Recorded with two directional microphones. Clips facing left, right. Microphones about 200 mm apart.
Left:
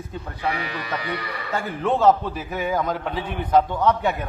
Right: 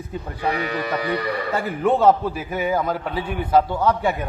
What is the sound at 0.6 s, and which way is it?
Livestock, 45° right (ahead or behind).